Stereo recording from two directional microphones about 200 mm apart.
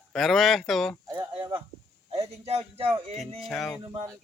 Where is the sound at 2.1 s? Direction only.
30° right (ahead or behind).